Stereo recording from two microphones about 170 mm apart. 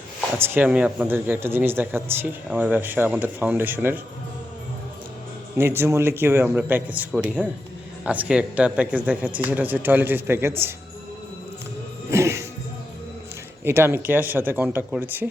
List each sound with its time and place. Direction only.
0.3 s speech: 10° right (ahead or behind)
5.5 s speech: 15° right (ahead or behind)
12.1 s music: 15° right (ahead or behind)
13.7 s speech: 15° right (ahead or behind)